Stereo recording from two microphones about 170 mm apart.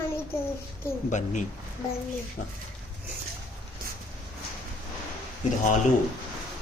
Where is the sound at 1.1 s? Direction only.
45° left (ahead or behind).